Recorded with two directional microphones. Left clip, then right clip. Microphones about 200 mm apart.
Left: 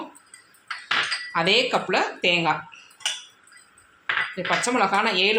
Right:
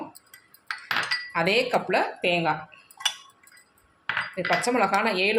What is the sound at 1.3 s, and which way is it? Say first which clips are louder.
Speech: left 3 dB; 5° right (ahead or behind).